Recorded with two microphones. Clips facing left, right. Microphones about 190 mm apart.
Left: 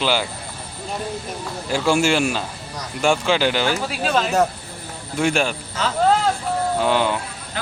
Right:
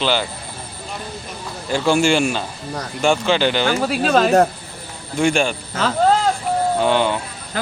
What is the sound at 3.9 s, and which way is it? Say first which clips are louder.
Speech: right 6 dB; 45° right (ahead or behind).